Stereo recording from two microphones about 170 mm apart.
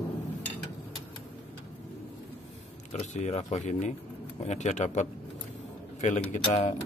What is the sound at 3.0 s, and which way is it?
Speech, 40° left (ahead or behind).